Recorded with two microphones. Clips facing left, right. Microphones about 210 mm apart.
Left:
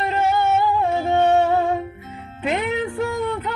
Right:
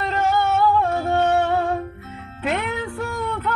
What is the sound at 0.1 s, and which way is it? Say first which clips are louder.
Music: even; 15° left (ahead or behind).